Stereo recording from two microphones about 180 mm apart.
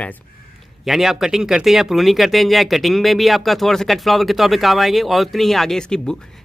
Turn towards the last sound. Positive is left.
turn(degrees=5)  # may be behind; listen again after turning